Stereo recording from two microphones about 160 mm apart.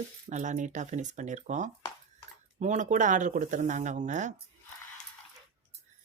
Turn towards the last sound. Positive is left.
turn(degrees=-50)  # may be behind; listen again after turning